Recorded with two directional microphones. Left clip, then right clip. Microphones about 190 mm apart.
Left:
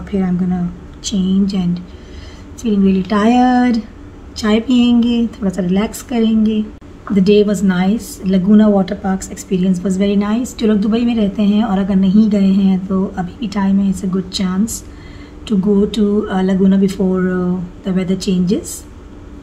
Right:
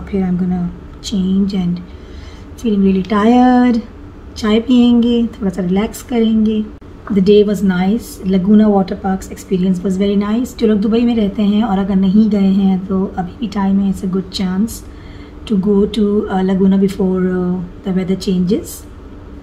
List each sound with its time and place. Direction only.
1.0 s a woman's voice: 5° left (ahead or behind)